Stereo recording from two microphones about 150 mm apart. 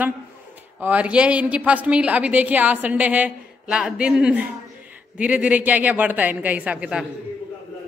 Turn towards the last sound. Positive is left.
turn(degrees=-5)  # may be behind; listen again after turning